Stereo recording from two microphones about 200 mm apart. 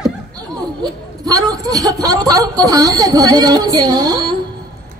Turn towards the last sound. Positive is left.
turn(degrees=-20)  # may be behind; listen again after turning